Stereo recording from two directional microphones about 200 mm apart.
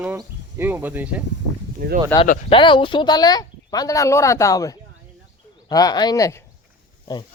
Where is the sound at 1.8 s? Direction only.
55° right (ahead or behind).